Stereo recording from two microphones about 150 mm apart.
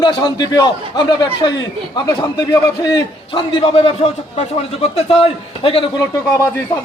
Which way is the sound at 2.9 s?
35° left (ahead or behind).